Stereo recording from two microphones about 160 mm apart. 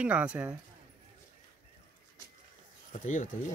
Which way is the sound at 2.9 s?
50° left (ahead or behind).